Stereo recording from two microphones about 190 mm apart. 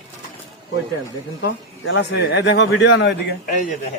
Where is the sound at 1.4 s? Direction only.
80° left.